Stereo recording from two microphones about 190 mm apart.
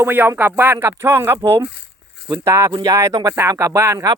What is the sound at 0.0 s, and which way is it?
Speech, 10° right (ahead or behind).